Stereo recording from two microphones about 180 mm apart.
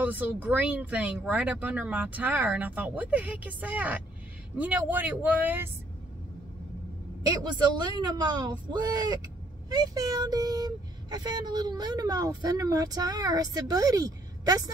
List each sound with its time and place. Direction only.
0.0 s speech: 10° right (ahead or behind)
7.4 s speech: 25° right (ahead or behind)